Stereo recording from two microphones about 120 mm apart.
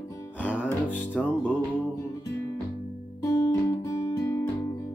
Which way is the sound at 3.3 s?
25° left (ahead or behind).